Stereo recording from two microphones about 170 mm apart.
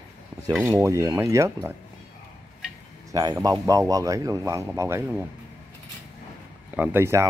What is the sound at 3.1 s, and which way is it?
Speech, 20° right (ahead or behind).